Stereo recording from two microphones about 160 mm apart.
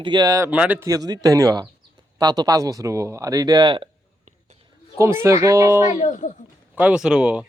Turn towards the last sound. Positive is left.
turn(degrees=-5)  # may be behind; listen again after turning